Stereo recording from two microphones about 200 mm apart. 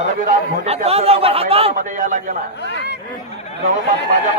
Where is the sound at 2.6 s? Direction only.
60° left (ahead or behind).